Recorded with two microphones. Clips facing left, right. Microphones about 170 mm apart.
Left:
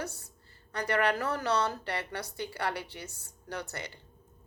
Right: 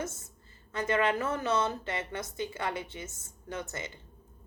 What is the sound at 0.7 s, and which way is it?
A woman's voice, 20° right (ahead or behind).